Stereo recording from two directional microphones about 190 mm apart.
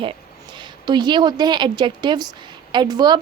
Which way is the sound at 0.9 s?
25° right (ahead or behind).